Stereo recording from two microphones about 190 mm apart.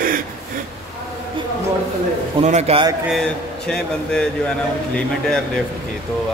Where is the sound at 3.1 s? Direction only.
5° left (ahead or behind).